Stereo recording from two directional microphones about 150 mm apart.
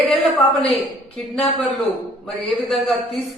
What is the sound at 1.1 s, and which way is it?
A man's voice, 5° left (ahead or behind).